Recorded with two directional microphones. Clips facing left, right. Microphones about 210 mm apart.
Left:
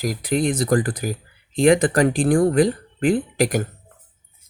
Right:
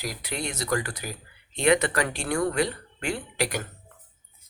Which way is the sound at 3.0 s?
50° left (ahead or behind).